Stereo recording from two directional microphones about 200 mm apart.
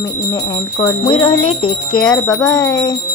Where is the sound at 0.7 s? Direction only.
20° left (ahead or behind).